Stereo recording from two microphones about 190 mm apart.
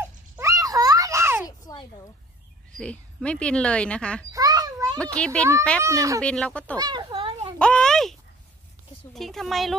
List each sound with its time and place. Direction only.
0.0 s a sound: 15° right (ahead or behind)
2.8 s speech: 5° left (ahead or behind)
4.3 s a sound: 20° right (ahead or behind)
4.9 s speech: 5° left (ahead or behind)
5.8 s speech: 15° right (ahead or behind)
6.2 s speech: 5° left (ahead or behind)
6.8 s a child's voice: 25° right (ahead or behind)
7.5 s a sound: 5° left (ahead or behind)
9.1 s speech: centre (ahead or behind)